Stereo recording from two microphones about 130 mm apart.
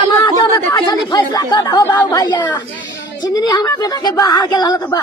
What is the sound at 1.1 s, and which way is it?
A woman's voice, 30° left (ahead or behind).